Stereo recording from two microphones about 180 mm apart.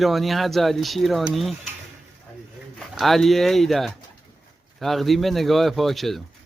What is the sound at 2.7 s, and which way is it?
Speech, centre (ahead or behind).